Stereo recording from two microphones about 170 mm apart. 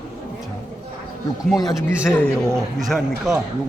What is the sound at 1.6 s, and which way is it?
Speech, 20° left (ahead or behind).